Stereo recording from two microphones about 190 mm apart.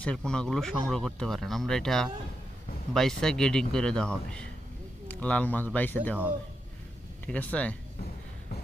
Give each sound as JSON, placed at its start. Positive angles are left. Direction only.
{"t": 0.0, "sound": "speech", "side_deg": 5}
{"t": 7.3, "sound": "speech", "side_deg": 5}